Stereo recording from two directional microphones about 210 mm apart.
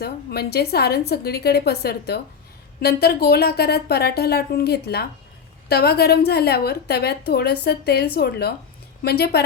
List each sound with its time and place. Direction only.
0.0 s a woman's voice: 50° left (ahead or behind)